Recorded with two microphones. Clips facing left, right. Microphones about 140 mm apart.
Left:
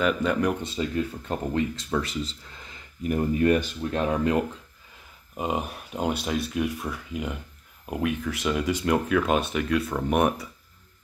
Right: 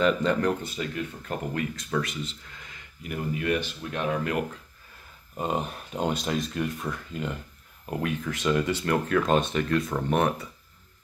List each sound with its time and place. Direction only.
0.0 s speech: 10° left (ahead or behind)
0.6 s speech: 25° left (ahead or behind)
5.4 s speech: 5° left (ahead or behind)